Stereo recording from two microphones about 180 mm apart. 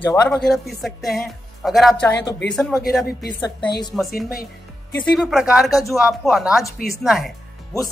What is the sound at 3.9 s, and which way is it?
Speech, centre (ahead or behind).